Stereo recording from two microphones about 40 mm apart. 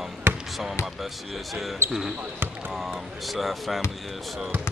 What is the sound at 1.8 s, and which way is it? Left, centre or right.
Speech, right.